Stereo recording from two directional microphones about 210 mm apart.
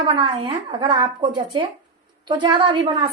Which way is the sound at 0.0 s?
20° right (ahead or behind).